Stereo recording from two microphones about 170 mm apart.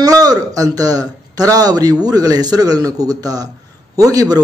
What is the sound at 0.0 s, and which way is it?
A man's voice, 20° right (ahead or behind).